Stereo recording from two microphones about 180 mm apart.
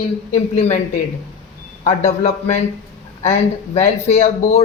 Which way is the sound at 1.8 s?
40° left (ahead or behind).